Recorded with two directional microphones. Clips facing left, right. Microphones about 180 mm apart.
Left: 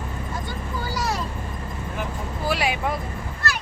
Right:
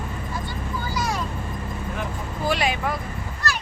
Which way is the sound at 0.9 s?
35° left (ahead or behind).